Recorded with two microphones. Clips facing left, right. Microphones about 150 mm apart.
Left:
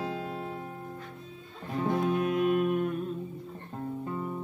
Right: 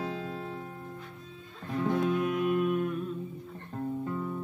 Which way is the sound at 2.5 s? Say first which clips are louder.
Left 1 dB; 35° left (ahead or behind).